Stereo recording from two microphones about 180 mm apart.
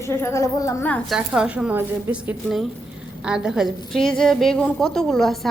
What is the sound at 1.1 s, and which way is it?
A woman's voice, 5° right (ahead or behind).